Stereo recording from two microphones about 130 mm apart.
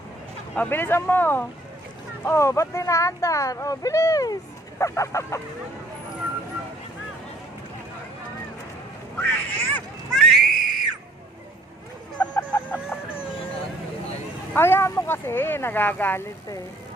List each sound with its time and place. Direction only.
0.5 s speech: 15° left (ahead or behind)
9.1 s a sound: 15° left (ahead or behind)
12.1 s chicken: 10° left (ahead or behind)
14.5 s speech: 15° left (ahead or behind)